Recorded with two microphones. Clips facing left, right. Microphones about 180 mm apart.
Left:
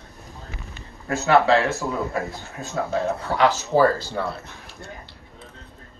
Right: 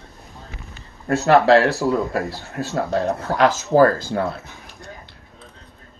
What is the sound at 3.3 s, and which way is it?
Speech, 45° right (ahead or behind).